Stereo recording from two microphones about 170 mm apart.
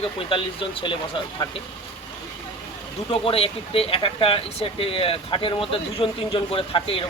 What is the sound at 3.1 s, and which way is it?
Speech, 35° left (ahead or behind).